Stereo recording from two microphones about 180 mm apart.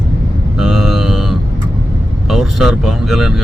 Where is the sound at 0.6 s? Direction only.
Centre (ahead or behind).